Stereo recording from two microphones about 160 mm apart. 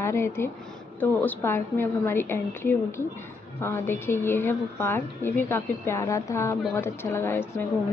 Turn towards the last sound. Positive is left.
turn(degrees=15)  # may be behind; listen again after turning